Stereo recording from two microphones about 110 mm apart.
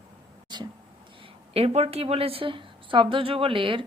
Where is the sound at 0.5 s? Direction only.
40° right (ahead or behind).